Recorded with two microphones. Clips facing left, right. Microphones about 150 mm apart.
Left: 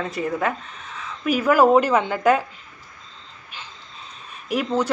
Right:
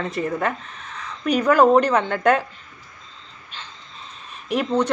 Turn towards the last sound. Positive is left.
turn(degrees=0)  # may be behind; listen again after turning